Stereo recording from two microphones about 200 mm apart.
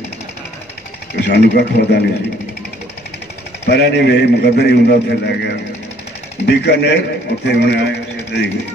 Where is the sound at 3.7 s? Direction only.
55° left (ahead or behind).